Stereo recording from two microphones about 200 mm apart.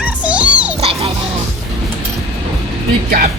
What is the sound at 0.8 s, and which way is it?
Music, 30° right (ahead or behind).